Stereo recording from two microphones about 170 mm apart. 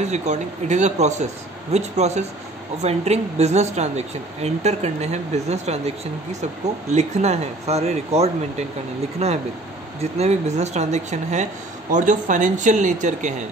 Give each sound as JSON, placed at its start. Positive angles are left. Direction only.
{"t": 0.0, "sound": "speech", "side_deg": -45}
{"t": 6.9, "sound": "speech", "side_deg": -40}